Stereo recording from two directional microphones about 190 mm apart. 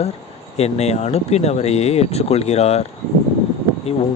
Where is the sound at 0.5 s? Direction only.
35° left (ahead or behind).